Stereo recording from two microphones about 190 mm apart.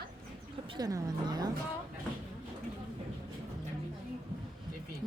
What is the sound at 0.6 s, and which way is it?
Speech, 20° right (ahead or behind).